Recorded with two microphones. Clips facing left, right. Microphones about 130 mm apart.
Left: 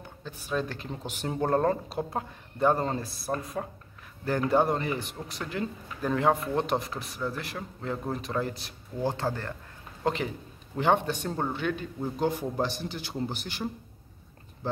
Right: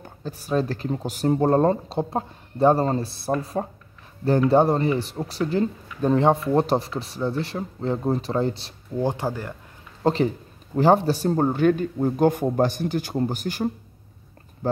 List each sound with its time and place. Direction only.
0.2 s speech: 40° right (ahead or behind)
9.0 s speech: 15° right (ahead or behind)
10.0 s a man's voice: 35° right (ahead or behind)
14.6 s a sound: 45° right (ahead or behind)